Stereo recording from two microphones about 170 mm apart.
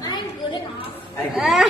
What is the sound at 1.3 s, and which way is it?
Speech, centre (ahead or behind).